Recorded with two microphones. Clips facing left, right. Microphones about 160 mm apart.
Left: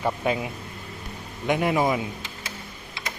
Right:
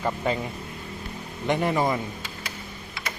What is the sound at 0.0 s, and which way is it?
A man's voice, 5° left (ahead or behind).